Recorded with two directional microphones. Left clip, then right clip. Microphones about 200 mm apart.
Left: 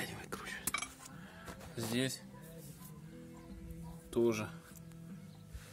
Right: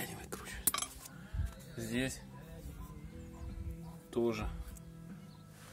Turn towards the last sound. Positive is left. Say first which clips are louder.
# left 2 dB
turn(degrees=20)  # may be behind; listen again after turning